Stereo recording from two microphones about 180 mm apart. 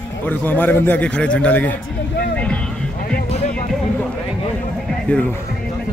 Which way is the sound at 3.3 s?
35° left (ahead or behind).